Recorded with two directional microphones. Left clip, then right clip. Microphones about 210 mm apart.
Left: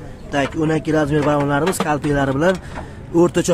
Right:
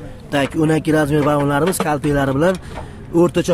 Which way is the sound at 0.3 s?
15° right (ahead or behind).